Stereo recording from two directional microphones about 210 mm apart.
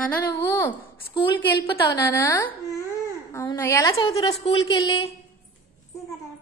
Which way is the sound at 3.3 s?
15° left (ahead or behind).